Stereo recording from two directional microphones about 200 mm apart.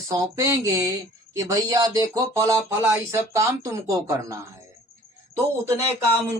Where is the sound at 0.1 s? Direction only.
15° right (ahead or behind).